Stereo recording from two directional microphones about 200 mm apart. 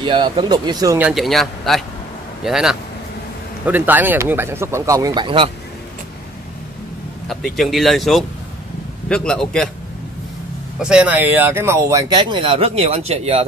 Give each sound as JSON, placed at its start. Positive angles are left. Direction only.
{"t": 0.0, "sound": "speech", "side_deg": -25}
{"t": 0.9, "sound": "speech", "side_deg": -5}
{"t": 7.2, "sound": "speech", "side_deg": 0}
{"t": 10.8, "sound": "speech", "side_deg": -5}